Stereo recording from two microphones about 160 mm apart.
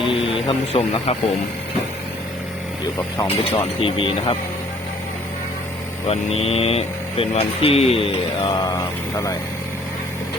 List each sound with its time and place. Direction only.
0.0 s a sound: 35° left (ahead or behind)
3.2 s speech: 35° left (ahead or behind)
6.1 s speech: 40° left (ahead or behind); by 9.3 s 20° left (ahead or behind)